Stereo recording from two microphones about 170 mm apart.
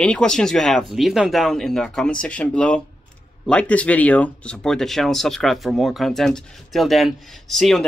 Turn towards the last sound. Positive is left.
turn(degrees=0)  # may be behind; listen again after turning